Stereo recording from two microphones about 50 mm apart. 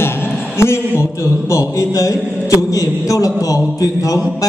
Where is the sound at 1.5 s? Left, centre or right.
Left.